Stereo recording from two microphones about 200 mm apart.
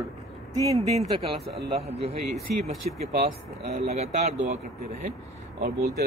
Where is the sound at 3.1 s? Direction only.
35° right (ahead or behind).